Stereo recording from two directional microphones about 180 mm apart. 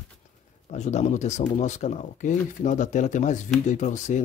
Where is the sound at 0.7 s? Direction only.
40° left (ahead or behind).